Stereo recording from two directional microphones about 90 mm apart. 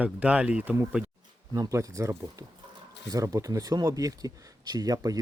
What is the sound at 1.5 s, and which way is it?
Speech, 40° right (ahead or behind).